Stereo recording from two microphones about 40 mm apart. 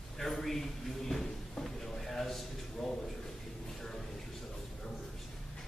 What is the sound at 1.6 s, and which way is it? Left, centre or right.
Drawer open or close, centre.